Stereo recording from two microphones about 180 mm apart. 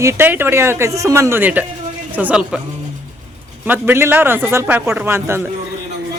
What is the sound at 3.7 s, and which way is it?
Speech, 10° right (ahead or behind).